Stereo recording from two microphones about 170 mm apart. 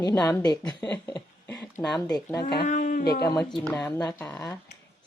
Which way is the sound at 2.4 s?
70° left (ahead or behind).